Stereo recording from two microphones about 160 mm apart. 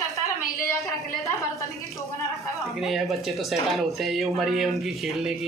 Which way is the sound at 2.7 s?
Centre (ahead or behind).